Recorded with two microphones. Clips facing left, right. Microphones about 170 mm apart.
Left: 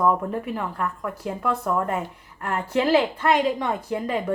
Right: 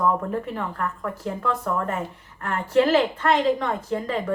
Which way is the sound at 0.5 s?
5° left (ahead or behind).